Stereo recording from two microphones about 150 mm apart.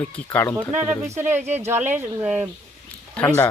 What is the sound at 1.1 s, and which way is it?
Speech, 15° right (ahead or behind).